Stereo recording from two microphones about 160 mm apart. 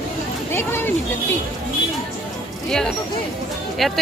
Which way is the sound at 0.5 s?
15° left (ahead or behind).